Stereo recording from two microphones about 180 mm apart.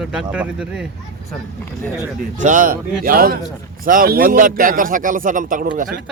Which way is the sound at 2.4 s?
45° right (ahead or behind).